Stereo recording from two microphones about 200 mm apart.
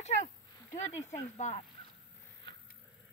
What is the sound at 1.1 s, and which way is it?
Speech, 35° left (ahead or behind).